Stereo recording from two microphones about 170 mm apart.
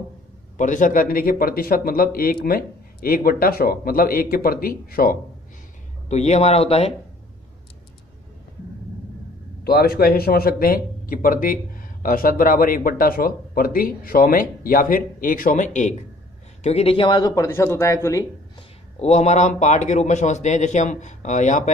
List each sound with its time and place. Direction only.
0.6 s speech: 50° left (ahead or behind)
6.0 s speech: 40° left (ahead or behind)
9.7 s speech: 65° left (ahead or behind); by 16.0 s 45° left (ahead or behind)
16.6 s speech: 35° left (ahead or behind); by 18.2 s 15° left (ahead or behind)
18.6 s speech: 40° left (ahead or behind)